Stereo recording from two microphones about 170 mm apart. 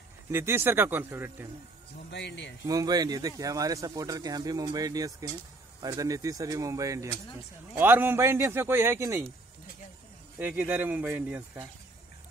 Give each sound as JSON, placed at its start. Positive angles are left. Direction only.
{"t": 0.3, "sound": "a man's voice", "side_deg": -15}
{"t": 2.0, "sound": "speech", "side_deg": 90}
{"t": 2.6, "sound": "a man's voice", "side_deg": -20}
{"t": 10.4, "sound": "a man's voice", "side_deg": -10}